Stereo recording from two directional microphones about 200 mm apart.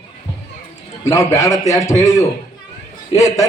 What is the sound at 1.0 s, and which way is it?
Speech, 15° left (ahead or behind).